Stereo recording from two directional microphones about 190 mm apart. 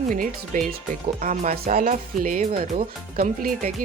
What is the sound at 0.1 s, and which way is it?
Speech, 45° right (ahead or behind).